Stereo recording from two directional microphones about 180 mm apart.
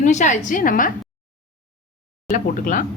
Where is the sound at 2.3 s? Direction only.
50° left (ahead or behind).